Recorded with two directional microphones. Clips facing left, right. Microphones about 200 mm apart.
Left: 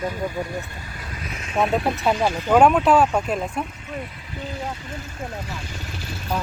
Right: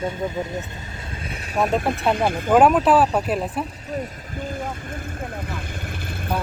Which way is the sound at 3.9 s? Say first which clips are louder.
Right 6 dB; 45° right (ahead or behind).